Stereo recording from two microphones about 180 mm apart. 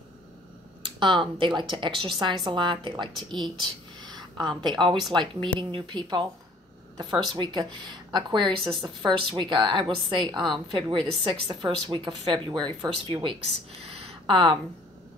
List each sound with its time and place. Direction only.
0.9 s a woman's voice: 25° right (ahead or behind)
3.5 s a sound: 25° right (ahead or behind)
4.6 s a woman's voice: 25° right (ahead or behind)
7.3 s a woman's voice: 25° right (ahead or behind)